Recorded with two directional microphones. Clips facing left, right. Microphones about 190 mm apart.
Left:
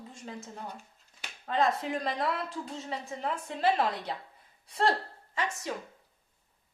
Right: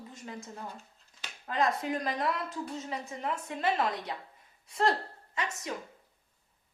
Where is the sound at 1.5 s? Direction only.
30° left (ahead or behind).